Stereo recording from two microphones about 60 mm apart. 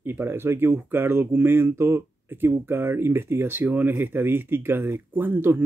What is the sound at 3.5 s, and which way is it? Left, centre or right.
Speech, right.